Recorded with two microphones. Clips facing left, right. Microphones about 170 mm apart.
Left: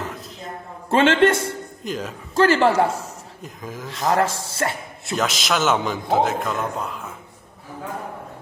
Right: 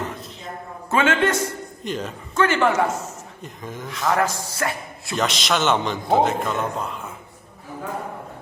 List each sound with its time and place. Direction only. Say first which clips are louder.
0.9 s a man's voice: left 4 dB; 30° left (ahead or behind)
1.8 s a man's voice: right 1 dB; centre (ahead or behind)
2.3 s speech: left 3 dB; 30° left (ahead or behind)
3.4 s a man's voice: even; centre (ahead or behind)
3.8 s a man's voice: left 1 dB; 30° left (ahead or behind)
5.1 s a man's voice: even; centre (ahead or behind)